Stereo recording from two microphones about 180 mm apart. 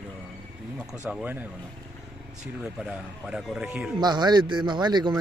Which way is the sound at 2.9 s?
5° right (ahead or behind).